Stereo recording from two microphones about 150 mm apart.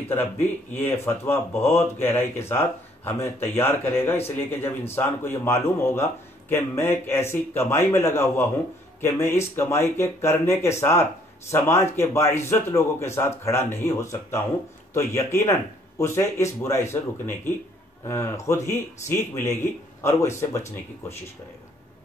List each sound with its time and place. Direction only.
0.1 s a man's voice: 15° left (ahead or behind)